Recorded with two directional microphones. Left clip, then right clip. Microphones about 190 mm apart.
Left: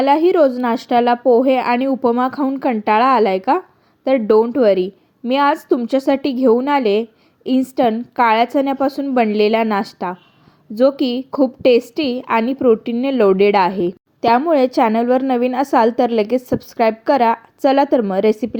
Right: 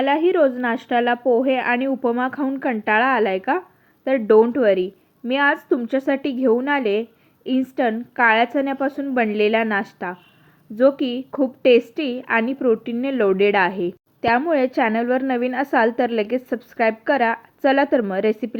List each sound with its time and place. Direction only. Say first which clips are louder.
0.0 s a woman's voice: left 4 dB; 45° left (ahead or behind)